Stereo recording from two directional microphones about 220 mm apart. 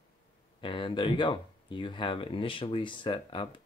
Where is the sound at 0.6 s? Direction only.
20° left (ahead or behind).